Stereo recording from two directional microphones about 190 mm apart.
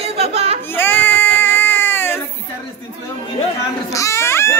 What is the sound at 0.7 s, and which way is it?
Baby cry, 10° left (ahead or behind).